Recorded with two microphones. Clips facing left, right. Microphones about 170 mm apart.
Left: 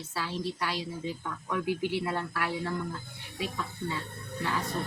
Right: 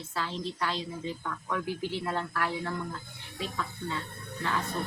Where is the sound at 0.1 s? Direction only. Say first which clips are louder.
Left 1 dB; 10° left (ahead or behind).